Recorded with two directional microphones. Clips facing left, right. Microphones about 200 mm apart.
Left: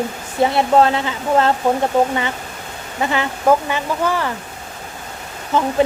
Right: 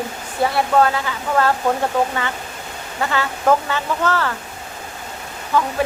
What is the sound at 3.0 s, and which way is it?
Speech, 20° left (ahead or behind).